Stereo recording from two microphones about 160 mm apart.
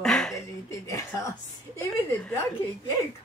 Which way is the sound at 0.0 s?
5° left (ahead or behind).